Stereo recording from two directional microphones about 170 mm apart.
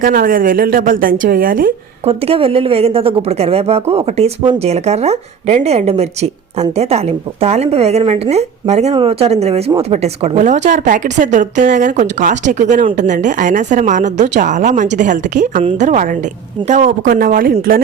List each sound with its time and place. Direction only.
0.0 s a woman's voice: 55° right (ahead or behind)
2.0 s a woman's voice: 35° right (ahead or behind); by 17.8 s 60° right (ahead or behind)